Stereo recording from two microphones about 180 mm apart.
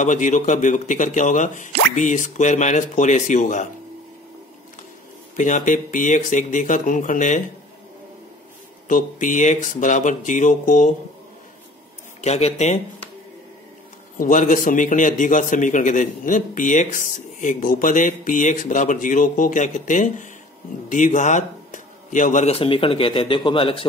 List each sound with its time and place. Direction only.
0.0 s a man's voice: 45° left (ahead or behind)
5.4 s a man's voice: 45° left (ahead or behind)
8.8 s a man's voice: 45° left (ahead or behind)
12.2 s speech: 35° left (ahead or behind)
14.1 s a man's voice: 45° left (ahead or behind); by 23.9 s 30° left (ahead or behind)